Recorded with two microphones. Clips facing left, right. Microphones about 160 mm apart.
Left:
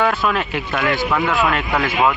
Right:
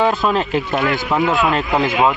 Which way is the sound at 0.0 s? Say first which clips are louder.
Right 2 dB; 20° right (ahead or behind).